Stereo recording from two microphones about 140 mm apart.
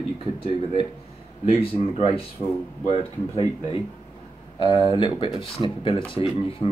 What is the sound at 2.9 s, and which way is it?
Speech, 40° left (ahead or behind).